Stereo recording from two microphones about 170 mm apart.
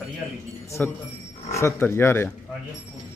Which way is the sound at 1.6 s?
15° left (ahead or behind).